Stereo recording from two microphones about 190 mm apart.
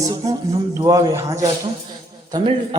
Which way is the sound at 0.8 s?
20° right (ahead or behind).